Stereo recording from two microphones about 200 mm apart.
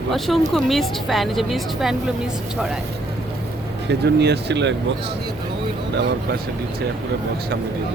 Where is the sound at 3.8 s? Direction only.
55° right (ahead or behind).